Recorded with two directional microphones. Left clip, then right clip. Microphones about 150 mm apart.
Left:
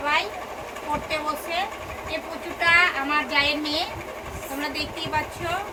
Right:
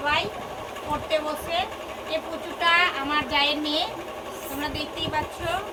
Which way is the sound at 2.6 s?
Centre (ahead or behind).